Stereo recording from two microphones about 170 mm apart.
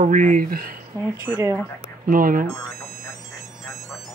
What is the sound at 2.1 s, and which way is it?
Speech, 55° right (ahead or behind).